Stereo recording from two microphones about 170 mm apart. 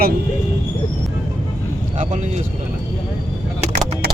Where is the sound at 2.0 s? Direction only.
45° right (ahead or behind).